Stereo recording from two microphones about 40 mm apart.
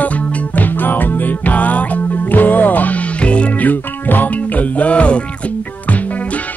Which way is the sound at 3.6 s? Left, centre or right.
Left.